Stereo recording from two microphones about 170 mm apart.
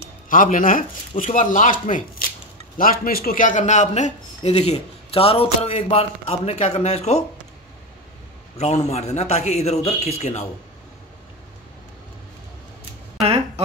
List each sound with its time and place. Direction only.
0.3 s a man's voice: 55° left (ahead or behind)
8.5 s a man's voice: 40° left (ahead or behind)
13.2 s a sound: 35° right (ahead or behind)